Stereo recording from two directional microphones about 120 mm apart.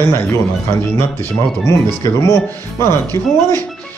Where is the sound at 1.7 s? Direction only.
25° left (ahead or behind).